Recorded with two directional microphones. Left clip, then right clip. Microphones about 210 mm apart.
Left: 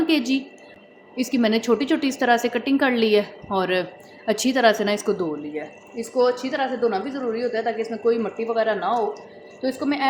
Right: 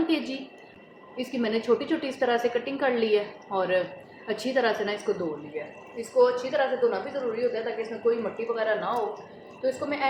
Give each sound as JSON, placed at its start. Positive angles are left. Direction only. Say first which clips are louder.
{"t": 0.1, "sound": "a woman's voice", "louder": "left 7 dB", "side_deg": 50}